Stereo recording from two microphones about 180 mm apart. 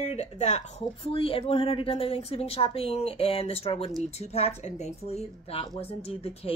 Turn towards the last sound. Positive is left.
turn(degrees=35)  # may be behind; listen again after turning